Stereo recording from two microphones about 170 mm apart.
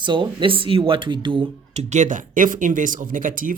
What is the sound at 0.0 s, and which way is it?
Speech, 30° right (ahead or behind).